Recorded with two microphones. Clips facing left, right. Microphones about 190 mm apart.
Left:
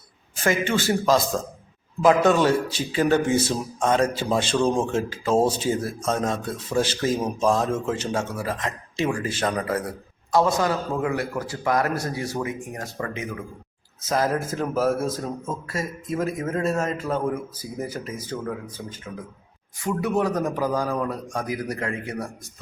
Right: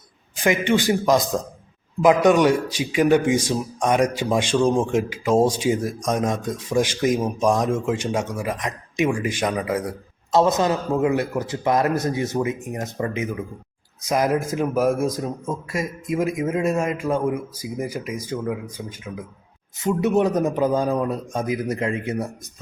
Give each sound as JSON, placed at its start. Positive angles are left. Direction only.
{"t": 0.3, "sound": "speech", "side_deg": -15}
{"t": 10.3, "sound": "a man's voice", "side_deg": -20}
{"t": 19.8, "sound": "a man's voice", "side_deg": -20}